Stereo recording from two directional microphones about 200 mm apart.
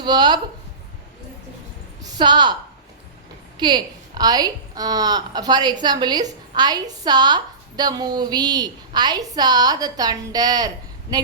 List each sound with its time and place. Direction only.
0.0 s a woman's voice: 20° right (ahead or behind)
2.0 s a sound: 20° right (ahead or behind)
3.6 s a woman's voice: 20° right (ahead or behind)